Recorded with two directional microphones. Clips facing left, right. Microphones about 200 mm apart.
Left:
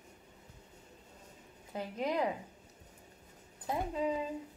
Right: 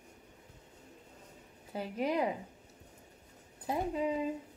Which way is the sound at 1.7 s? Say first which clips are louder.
Right 2 dB; 10° right (ahead or behind).